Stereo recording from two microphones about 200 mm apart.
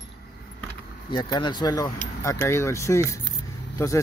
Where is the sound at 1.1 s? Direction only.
20° left (ahead or behind).